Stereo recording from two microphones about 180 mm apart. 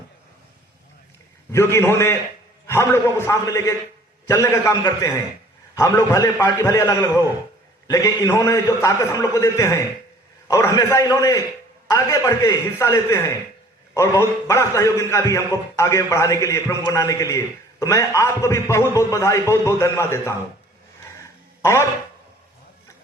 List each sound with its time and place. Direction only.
1.5 s a man's voice: 15° left (ahead or behind)
21.6 s speech: 15° left (ahead or behind)